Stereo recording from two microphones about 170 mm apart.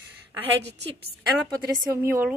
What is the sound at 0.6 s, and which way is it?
Speech, 90° right.